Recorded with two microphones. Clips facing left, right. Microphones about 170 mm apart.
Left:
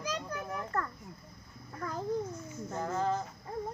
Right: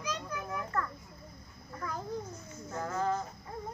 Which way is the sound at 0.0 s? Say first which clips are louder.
Left 1 dB; 35° left (ahead or behind).